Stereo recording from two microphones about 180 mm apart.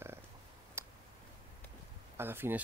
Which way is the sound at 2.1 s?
10° right (ahead or behind).